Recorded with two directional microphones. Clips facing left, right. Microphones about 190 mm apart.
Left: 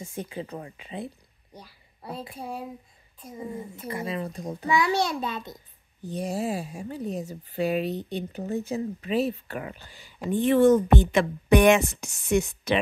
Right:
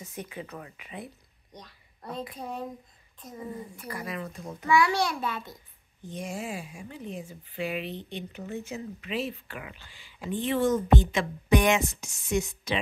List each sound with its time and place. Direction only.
0.0 s speech: 30° left (ahead or behind)
1.5 s a sound: 10° left (ahead or behind)
2.3 s speech: 10° left (ahead or behind)
3.3 s speech: 25° left (ahead or behind)
6.0 s a woman's voice: 35° left (ahead or behind); by 12.8 s 60° left (ahead or behind)